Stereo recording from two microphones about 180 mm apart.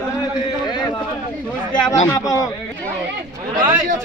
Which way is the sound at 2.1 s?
20° left (ahead or behind).